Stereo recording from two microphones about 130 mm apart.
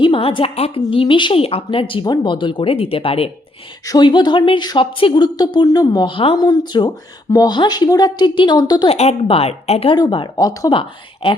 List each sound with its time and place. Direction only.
0.0 s speech: 45° left (ahead or behind)
3.8 s a woman's voice: 35° left (ahead or behind)
8.9 s speech: 50° left (ahead or behind)
10.0 s speech: 35° left (ahead or behind)
10.8 s a woman's voice: 40° left (ahead or behind)